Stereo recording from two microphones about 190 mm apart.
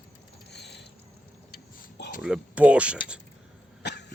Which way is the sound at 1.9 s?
60° left (ahead or behind).